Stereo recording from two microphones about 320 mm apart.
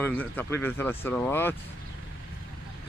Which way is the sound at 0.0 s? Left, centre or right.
Centre.